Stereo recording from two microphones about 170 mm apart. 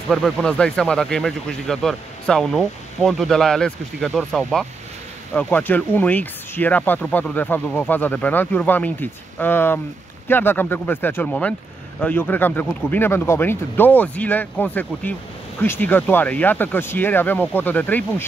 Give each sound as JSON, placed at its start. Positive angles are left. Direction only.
{"t": 0.1, "sound": "speech", "side_deg": 5}